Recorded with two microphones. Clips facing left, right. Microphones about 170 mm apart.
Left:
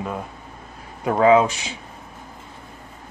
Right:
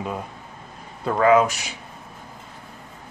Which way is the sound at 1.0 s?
20° left (ahead or behind).